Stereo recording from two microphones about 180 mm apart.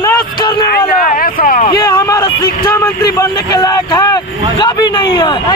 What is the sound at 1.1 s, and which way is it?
Speech, 50° left (ahead or behind).